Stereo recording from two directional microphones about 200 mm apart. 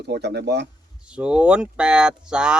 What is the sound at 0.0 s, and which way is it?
Speech, 60° right (ahead or behind).